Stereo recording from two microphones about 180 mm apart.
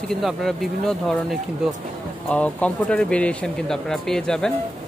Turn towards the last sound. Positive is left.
turn(degrees=5)  # may be behind; listen again after turning